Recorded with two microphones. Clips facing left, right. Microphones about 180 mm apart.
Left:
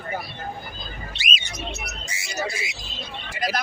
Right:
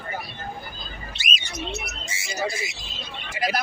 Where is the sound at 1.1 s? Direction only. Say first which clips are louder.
Left 1 dB; 45° right (ahead or behind).